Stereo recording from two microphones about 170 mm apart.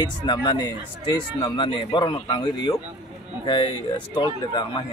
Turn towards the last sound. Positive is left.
turn(degrees=25)  # may be behind; listen again after turning